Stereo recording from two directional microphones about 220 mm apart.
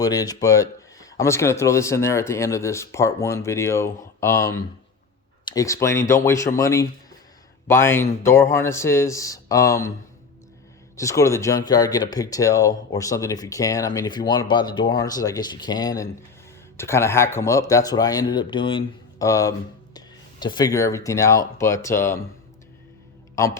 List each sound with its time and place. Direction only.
0.0 s speech: 15° left (ahead or behind)
10.9 s speech: 15° left (ahead or behind)